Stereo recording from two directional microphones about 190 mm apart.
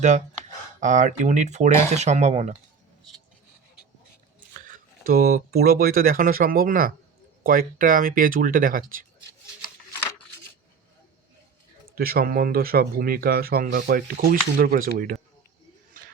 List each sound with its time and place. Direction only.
0.8 s speech: 40° right (ahead or behind)
4.4 s speech: 45° right (ahead or behind)
11.9 s speech: 50° right (ahead or behind)